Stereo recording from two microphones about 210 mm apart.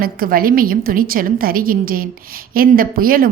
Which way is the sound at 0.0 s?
45° right (ahead or behind).